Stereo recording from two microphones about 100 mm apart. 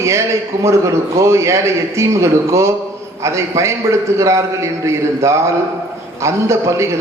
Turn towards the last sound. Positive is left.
turn(degrees=-30)  # may be behind; listen again after turning